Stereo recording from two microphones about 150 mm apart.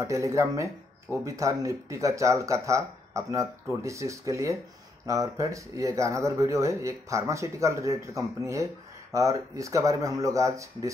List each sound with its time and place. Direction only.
0.0 s speech: 20° right (ahead or behind)